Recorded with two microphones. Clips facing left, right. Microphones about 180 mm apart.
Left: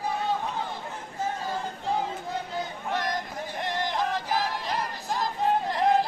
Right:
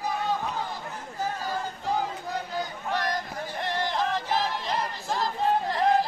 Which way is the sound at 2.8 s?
20° left (ahead or behind).